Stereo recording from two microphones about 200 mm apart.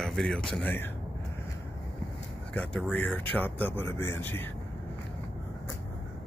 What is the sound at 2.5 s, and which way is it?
Speech, 5° left (ahead or behind).